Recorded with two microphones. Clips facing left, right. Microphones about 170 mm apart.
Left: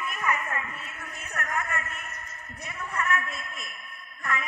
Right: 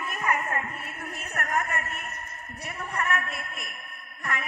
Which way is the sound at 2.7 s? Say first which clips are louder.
Even; 35° right (ahead or behind).